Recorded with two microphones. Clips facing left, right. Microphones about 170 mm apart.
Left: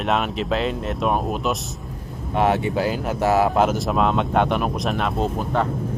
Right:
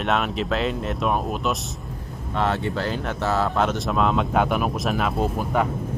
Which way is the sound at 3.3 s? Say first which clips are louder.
Left 5 dB; 15° left (ahead or behind).